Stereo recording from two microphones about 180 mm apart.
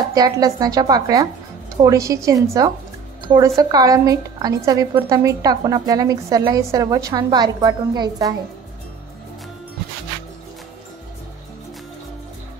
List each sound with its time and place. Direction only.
0.1 s a woman's voice: 20° right (ahead or behind)